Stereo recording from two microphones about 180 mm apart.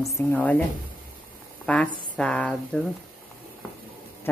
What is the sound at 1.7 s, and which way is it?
Speech, 5° left (ahead or behind).